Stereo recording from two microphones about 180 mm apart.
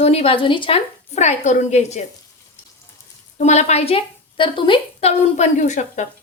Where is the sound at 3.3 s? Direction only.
40° left (ahead or behind).